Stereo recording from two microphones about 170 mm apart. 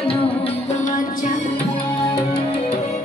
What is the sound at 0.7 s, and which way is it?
Music, 50° left (ahead or behind).